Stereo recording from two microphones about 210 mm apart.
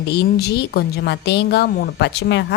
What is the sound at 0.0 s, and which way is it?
A woman's voice, 55° left (ahead or behind).